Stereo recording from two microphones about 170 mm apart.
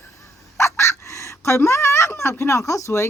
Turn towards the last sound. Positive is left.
turn(degrees=15)  # may be behind; listen again after turning